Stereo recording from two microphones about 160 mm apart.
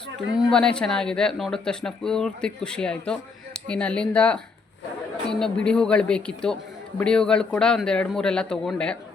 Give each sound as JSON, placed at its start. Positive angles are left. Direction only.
{"t": 0.2, "sound": "speech", "side_deg": 0}